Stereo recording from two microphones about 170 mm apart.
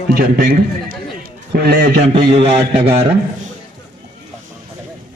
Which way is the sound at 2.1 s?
35° right (ahead or behind).